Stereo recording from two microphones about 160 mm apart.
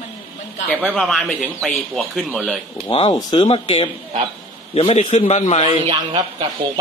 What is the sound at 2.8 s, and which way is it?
A man's voice, 40° left (ahead or behind).